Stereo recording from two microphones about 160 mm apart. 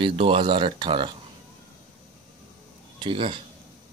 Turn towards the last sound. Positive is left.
turn(degrees=-35)  # may be behind; listen again after turning